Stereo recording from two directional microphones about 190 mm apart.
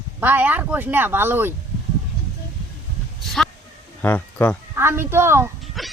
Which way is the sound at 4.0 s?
10° left (ahead or behind).